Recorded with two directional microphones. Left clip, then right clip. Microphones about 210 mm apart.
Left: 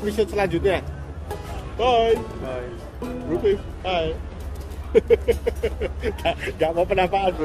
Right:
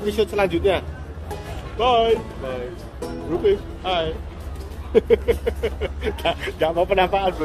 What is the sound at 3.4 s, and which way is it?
Speech, 5° right (ahead or behind).